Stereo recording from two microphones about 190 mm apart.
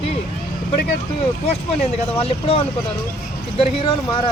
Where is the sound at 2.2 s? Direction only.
30° left (ahead or behind).